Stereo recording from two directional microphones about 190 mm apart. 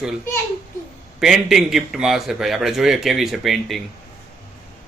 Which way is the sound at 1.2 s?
Centre (ahead or behind).